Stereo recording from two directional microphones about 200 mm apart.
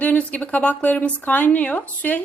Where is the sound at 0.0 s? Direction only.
5° left (ahead or behind).